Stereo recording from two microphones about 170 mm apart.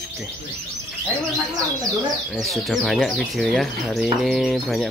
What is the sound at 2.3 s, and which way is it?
Speech, centre (ahead or behind).